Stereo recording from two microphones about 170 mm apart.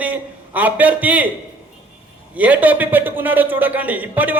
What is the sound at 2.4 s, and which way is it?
A man's voice, 10° right (ahead or behind).